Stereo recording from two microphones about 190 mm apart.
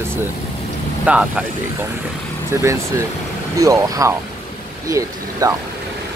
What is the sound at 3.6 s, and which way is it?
Speech, 15° right (ahead or behind).